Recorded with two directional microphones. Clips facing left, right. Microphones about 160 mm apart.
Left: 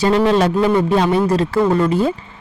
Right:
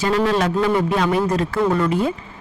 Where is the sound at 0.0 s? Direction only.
30° left (ahead or behind).